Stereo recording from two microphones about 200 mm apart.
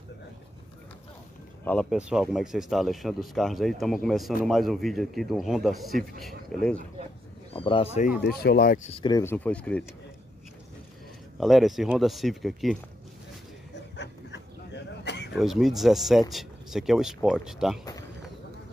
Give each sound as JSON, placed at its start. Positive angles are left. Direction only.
{"t": 1.6, "sound": "speech", "side_deg": 5}
{"t": 7.5, "sound": "speech", "side_deg": 25}
{"t": 8.2, "sound": "speech", "side_deg": 50}
{"t": 9.0, "sound": "speech", "side_deg": 15}
{"t": 11.3, "sound": "speech", "side_deg": 0}
{"t": 13.7, "sound": "dog", "side_deg": 60}
{"t": 15.3, "sound": "speech", "side_deg": 0}